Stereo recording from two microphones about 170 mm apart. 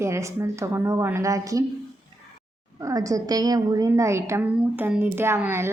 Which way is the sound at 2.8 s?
20° right (ahead or behind).